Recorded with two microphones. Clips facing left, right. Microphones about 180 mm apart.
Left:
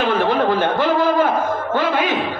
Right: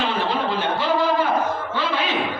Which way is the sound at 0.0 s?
50° left (ahead or behind).